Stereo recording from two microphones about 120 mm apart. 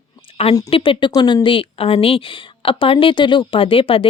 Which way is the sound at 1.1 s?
35° left (ahead or behind).